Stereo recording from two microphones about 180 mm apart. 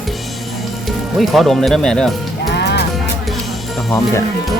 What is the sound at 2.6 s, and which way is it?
Music, 70° left (ahead or behind).